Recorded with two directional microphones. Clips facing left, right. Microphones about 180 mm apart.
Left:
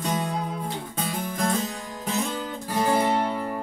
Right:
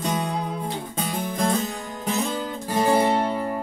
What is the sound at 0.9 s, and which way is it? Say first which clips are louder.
Music: right 2 dB; 20° right (ahead or behind).